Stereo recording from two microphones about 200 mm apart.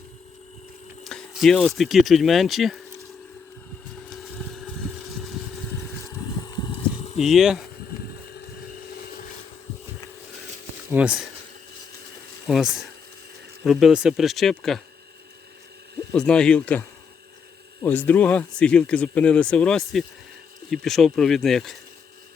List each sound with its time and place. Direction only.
1.0 s speech: centre (ahead or behind)
4.1 s a sound: centre (ahead or behind)
6.1 s a sound: 25° left (ahead or behind)
7.2 s speech: centre (ahead or behind)
11.0 s speech: 10° right (ahead or behind)
12.5 s speech: centre (ahead or behind)
16.1 s speech: 5° left (ahead or behind)
17.8 s speech: 10° left (ahead or behind)